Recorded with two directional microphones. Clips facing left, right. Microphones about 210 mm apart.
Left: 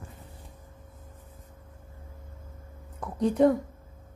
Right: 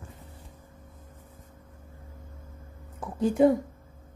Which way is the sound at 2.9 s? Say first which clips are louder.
Even; centre (ahead or behind).